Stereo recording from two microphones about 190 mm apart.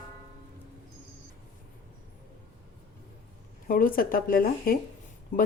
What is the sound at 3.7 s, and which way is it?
Speech, 50° left (ahead or behind).